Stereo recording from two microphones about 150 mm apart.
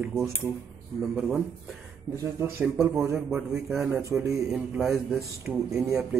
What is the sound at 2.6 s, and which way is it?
A man's voice, 5° right (ahead or behind).